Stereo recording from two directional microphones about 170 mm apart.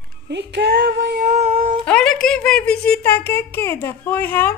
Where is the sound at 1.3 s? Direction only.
45° right (ahead or behind).